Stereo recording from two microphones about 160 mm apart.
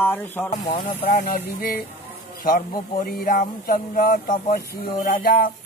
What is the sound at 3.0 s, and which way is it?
Speech, 65° left (ahead or behind).